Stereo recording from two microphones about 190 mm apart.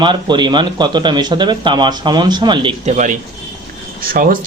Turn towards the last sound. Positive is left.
turn(degrees=-50)  # may be behind; listen again after turning